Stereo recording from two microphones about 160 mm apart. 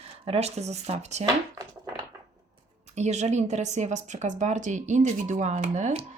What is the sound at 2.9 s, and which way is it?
A woman's voice, 45° right (ahead or behind).